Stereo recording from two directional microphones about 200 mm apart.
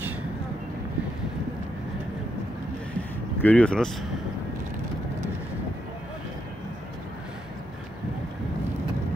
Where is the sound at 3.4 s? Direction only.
5° left (ahead or behind).